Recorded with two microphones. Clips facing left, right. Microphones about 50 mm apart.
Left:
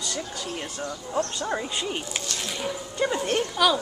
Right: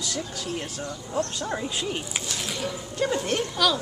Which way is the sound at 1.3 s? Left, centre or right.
Centre.